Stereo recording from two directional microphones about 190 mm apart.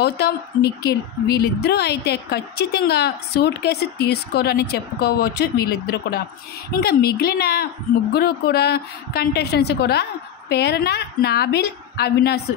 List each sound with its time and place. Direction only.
0.0 s a woman's voice: 60° left (ahead or behind)